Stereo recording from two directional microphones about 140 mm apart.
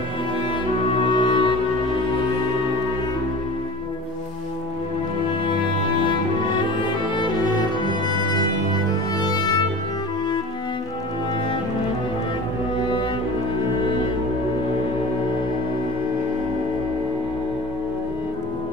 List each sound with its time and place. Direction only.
1.0 s music: 35° left (ahead or behind)
7.2 s music: 30° left (ahead or behind)
9.2 s music: 30° left (ahead or behind)